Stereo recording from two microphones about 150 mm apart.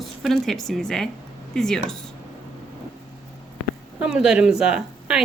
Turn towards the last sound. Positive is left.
turn(degrees=-5)  # may be behind; listen again after turning